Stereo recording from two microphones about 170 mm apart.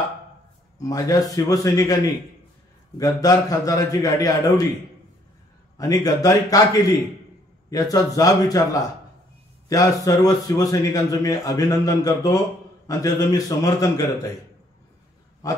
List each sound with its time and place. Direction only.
0.7 s speech: 20° left (ahead or behind)
5.8 s speech: 20° left (ahead or behind)
9.7 s speech: 20° left (ahead or behind)